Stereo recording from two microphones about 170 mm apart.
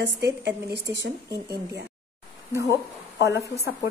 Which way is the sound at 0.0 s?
85° right.